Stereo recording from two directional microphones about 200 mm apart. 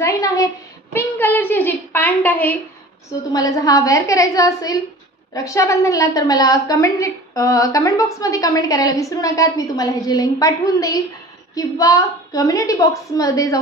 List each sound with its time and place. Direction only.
0.0 s a woman's voice: 15° left (ahead or behind)
0.9 s a sound: 10° left (ahead or behind)
3.3 s a woman's voice: 15° left (ahead or behind)